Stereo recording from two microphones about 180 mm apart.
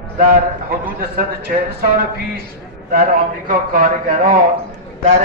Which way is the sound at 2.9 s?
50° right (ahead or behind).